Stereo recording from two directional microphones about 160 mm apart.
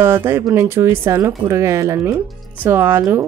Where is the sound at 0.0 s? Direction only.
15° right (ahead or behind).